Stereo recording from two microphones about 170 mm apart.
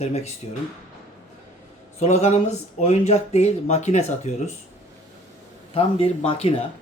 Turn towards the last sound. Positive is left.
turn(degrees=35)  # may be behind; listen again after turning